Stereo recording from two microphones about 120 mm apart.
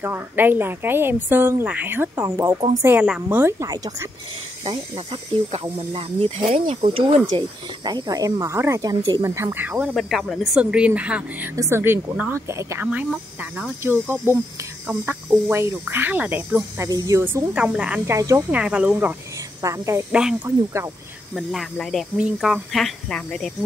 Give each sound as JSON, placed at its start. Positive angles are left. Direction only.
{"t": 0.0, "sound": "a woman's voice", "side_deg": -15}
{"t": 3.5, "sound": "speech", "side_deg": -30}
{"t": 4.6, "sound": "speech", "side_deg": -55}
{"t": 7.3, "sound": "speech", "side_deg": -35}
{"t": 9.9, "sound": "a woman's voice", "side_deg": 0}
{"t": 11.5, "sound": "speech", "side_deg": -25}
{"t": 12.8, "sound": "a woman's voice", "side_deg": -10}
{"t": 18.0, "sound": "speech", "side_deg": -25}
{"t": 18.5, "sound": "a woman's voice", "side_deg": -10}
{"t": 19.6, "sound": "speech", "side_deg": -25}
{"t": 20.1, "sound": "a woman's voice", "side_deg": -10}
{"t": 20.4, "sound": "speech", "side_deg": -25}
{"t": 21.4, "sound": "speech", "side_deg": 0}